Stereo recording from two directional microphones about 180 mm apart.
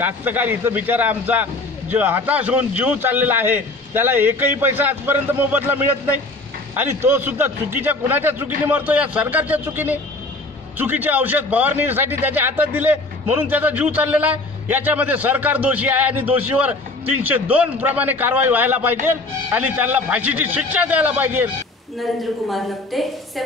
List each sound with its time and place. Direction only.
0.0 s a man's voice: 10° right (ahead or behind)
22.5 s a woman's voice: centre (ahead or behind)